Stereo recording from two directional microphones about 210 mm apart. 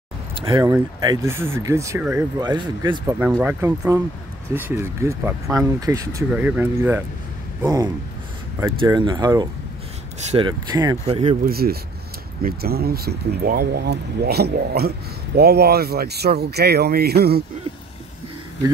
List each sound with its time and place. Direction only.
0.4 s speech: 15° right (ahead or behind)
11.4 s speech: 45° right (ahead or behind)